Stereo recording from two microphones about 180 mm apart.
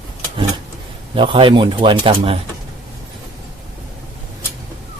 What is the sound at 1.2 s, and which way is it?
Speech, 30° right (ahead or behind).